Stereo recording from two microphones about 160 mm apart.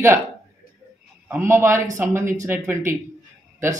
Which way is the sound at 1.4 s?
15° right (ahead or behind).